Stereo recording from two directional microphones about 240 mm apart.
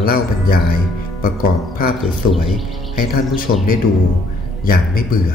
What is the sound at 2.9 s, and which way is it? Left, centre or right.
Speech, left.